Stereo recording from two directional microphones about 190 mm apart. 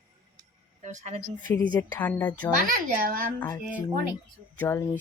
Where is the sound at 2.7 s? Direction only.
50° right (ahead or behind).